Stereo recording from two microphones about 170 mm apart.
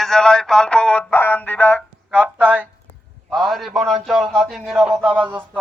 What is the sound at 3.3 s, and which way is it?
A man's voice, centre (ahead or behind).